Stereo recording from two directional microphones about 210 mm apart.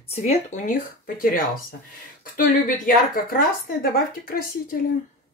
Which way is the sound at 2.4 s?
40° left (ahead or behind).